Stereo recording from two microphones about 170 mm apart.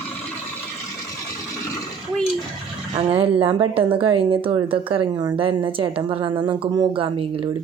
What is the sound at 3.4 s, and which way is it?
Speech, 30° right (ahead or behind).